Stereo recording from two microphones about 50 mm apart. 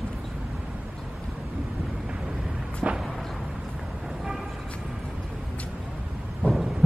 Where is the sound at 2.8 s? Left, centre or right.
Right.